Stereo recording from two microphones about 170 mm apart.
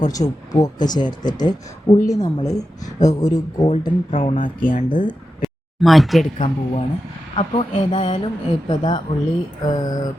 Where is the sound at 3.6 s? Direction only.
35° left (ahead or behind).